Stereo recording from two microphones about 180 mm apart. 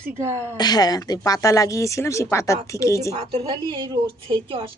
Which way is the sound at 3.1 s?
35° right (ahead or behind).